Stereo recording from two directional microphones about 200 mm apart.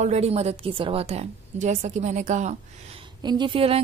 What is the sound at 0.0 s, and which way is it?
A woman's voice, 35° right (ahead or behind).